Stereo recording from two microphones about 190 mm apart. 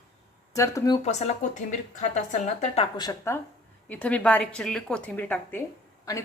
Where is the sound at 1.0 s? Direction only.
35° left (ahead or behind).